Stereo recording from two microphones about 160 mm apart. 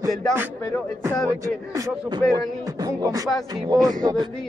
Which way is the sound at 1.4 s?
25° right (ahead or behind).